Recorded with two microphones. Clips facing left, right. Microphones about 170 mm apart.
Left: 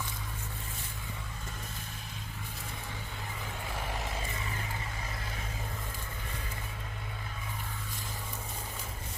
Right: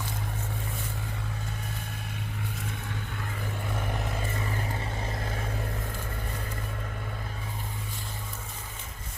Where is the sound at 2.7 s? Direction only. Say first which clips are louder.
Right 5 dB; 65° right (ahead or behind).